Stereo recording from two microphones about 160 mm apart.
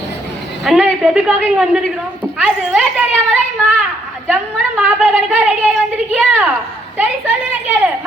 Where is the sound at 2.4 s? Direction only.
10° right (ahead or behind).